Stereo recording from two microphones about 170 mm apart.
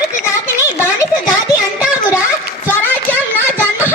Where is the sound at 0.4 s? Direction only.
15° left (ahead or behind).